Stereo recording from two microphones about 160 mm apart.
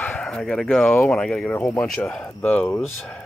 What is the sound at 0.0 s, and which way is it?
Speech, 10° left (ahead or behind).